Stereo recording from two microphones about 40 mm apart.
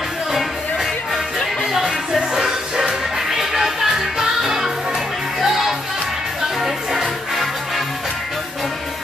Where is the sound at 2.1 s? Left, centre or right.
Centre.